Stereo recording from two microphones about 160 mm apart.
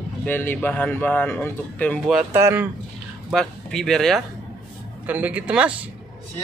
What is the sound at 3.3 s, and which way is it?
Speech, 5° left (ahead or behind).